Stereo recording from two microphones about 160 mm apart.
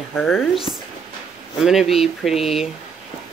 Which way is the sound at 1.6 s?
Centre (ahead or behind).